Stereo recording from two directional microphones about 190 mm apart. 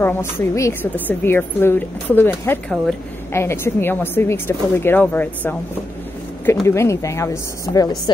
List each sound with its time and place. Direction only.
0.0 s a woman's voice: 10° left (ahead or behind)